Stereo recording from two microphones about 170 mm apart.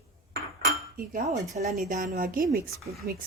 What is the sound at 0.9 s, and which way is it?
Cutlery, 55° right (ahead or behind).